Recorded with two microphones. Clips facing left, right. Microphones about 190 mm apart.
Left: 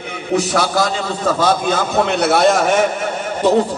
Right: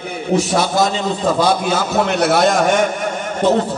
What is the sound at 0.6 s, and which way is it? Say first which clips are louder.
A man's voice: right 1 dB; 20° right (ahead or behind).